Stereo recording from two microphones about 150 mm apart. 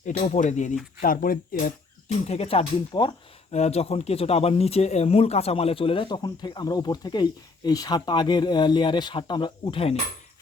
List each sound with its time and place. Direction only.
0.3 s speech: 55° left (ahead or behind)
1.0 s speech: 70° left (ahead or behind)
2.2 s speech: 45° left (ahead or behind)
2.9 s speech: 30° left (ahead or behind)
3.5 s speech: 45° left (ahead or behind)